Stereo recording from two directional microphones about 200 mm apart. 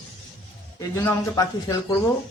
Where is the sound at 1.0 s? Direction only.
15° left (ahead or behind).